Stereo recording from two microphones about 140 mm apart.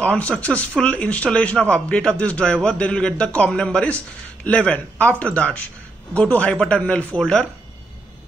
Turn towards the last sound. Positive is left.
turn(degrees=5)  # may be behind; listen again after turning